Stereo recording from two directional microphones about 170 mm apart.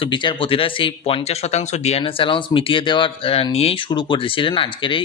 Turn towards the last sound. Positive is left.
turn(degrees=30)  # may be behind; listen again after turning